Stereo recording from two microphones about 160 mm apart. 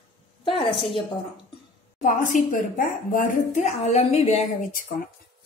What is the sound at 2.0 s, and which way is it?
A woman's voice, 55° left (ahead or behind).